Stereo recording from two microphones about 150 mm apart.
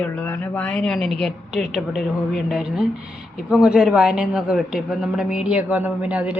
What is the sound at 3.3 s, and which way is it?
Speech, 5° right (ahead or behind).